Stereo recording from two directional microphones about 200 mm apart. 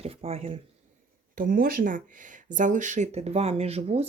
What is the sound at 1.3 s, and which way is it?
Speech, 45° right (ahead or behind).